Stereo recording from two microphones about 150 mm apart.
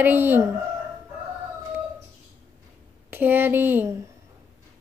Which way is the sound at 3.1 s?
15° right (ahead or behind).